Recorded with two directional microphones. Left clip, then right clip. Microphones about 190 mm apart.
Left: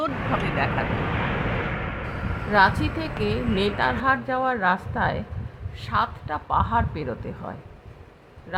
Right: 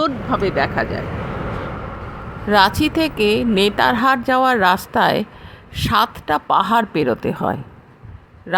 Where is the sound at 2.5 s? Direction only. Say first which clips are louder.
Right 5 dB; 45° right (ahead or behind).